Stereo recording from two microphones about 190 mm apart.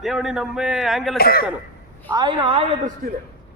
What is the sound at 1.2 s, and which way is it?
Speech, 50° left (ahead or behind).